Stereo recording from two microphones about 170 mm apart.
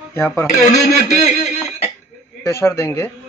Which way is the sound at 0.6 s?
40° left (ahead or behind).